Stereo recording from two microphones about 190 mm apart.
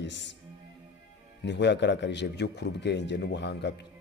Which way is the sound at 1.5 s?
65° left (ahead or behind).